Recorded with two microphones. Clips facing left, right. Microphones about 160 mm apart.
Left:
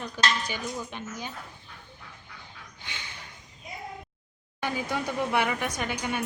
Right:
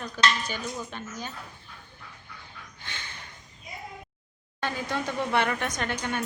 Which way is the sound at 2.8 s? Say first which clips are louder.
Even; 15° left (ahead or behind).